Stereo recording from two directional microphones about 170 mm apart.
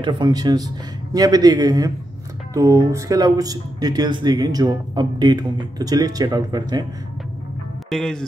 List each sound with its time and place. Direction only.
0.0 s speech: 25° right (ahead or behind)
7.9 s speech: 5° left (ahead or behind)